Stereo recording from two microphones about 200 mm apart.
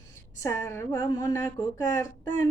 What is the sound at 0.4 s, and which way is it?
Female singing, 15° left (ahead or behind).